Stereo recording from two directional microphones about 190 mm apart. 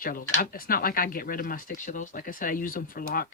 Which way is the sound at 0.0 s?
45° left (ahead or behind).